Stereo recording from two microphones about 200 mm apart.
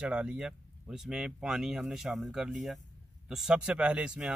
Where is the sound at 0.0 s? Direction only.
5° right (ahead or behind).